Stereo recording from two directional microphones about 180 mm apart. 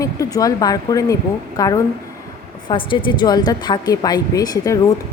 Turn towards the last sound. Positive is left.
turn(degrees=20)  # may be behind; listen again after turning